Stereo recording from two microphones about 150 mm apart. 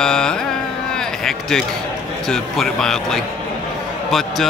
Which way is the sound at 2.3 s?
5° left (ahead or behind).